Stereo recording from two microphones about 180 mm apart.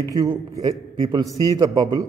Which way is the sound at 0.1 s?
20° right (ahead or behind).